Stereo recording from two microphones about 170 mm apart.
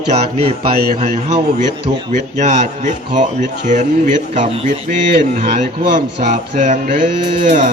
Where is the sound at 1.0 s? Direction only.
45° right (ahead or behind).